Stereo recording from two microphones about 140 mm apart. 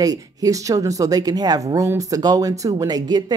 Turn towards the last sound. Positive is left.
turn(degrees=-30)  # may be behind; listen again after turning